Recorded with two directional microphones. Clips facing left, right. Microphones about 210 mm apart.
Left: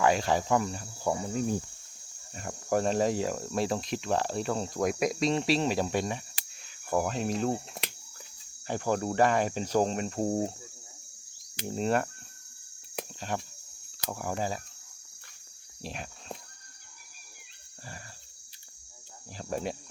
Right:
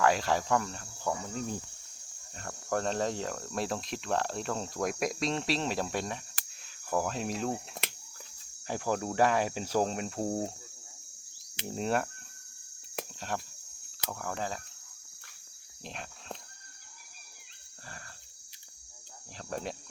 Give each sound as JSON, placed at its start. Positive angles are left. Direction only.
{"t": 0.0, "sound": "speech", "side_deg": 0}
{"t": 3.5, "sound": "speech", "side_deg": 0}
{"t": 10.2, "sound": "speech", "side_deg": 10}
{"t": 11.7, "sound": "speech", "side_deg": 0}
{"t": 13.0, "sound": "a sound", "side_deg": 0}
{"t": 14.1, "sound": "speech", "side_deg": 10}
{"t": 15.8, "sound": "cricket", "side_deg": 5}
{"t": 19.4, "sound": "speech", "side_deg": 5}